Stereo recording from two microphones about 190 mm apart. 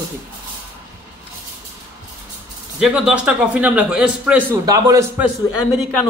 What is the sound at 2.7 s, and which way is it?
Speech, 5° right (ahead or behind).